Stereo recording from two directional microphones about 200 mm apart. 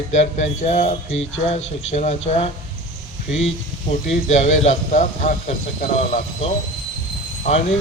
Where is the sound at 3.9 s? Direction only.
35° left (ahead or behind).